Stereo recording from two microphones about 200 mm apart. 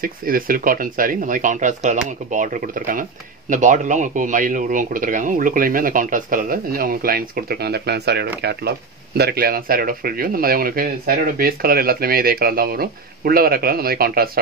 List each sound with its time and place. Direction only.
0.0 s speech: 45° right (ahead or behind)